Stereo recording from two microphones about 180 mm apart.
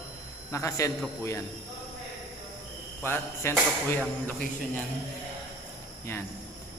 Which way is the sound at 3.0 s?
15° left (ahead or behind).